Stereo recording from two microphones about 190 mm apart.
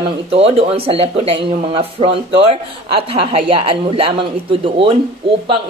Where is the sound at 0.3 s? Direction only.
30° right (ahead or behind).